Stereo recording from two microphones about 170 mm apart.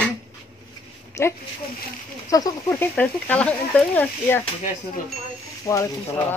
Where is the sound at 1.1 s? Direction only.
15° left (ahead or behind).